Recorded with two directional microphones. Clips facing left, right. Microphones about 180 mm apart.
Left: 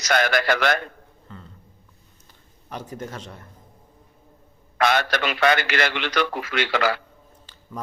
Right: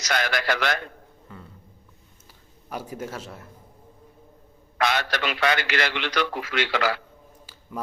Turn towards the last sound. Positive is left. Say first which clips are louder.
# left 2 dB
turn(degrees=50)  # may be behind; listen again after turning